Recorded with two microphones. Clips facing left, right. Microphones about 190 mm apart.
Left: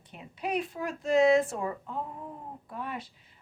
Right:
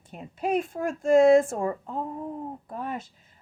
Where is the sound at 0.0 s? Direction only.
45° right (ahead or behind).